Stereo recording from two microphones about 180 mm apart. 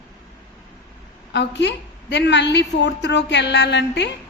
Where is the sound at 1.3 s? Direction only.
75° left (ahead or behind).